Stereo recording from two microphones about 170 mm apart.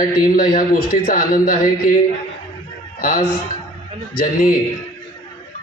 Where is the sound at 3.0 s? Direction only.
55° left (ahead or behind).